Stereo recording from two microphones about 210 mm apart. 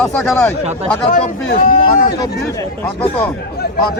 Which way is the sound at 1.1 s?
40° left (ahead or behind).